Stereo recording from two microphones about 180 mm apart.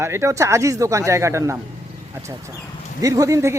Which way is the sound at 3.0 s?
20° right (ahead or behind).